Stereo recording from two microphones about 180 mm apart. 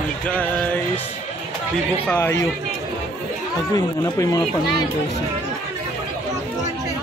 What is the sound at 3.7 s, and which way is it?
Speech, 20° left (ahead or behind).